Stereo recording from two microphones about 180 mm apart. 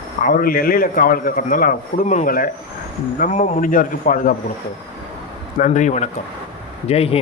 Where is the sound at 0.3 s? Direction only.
50° left (ahead or behind).